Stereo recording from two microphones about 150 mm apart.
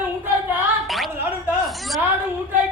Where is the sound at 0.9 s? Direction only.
Centre (ahead or behind).